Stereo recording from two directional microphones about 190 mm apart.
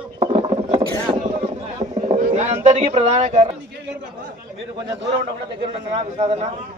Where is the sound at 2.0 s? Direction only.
35° right (ahead or behind).